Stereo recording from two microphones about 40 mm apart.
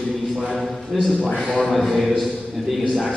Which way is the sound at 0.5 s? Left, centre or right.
Centre.